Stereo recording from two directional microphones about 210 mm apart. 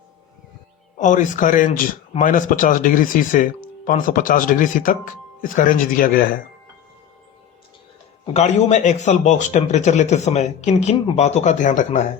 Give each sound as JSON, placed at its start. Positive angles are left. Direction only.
{"t": 0.9, "sound": "speech", "side_deg": 35}
{"t": 8.3, "sound": "speech", "side_deg": 30}